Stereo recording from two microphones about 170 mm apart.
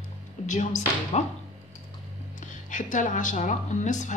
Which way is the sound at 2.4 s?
50° left (ahead or behind).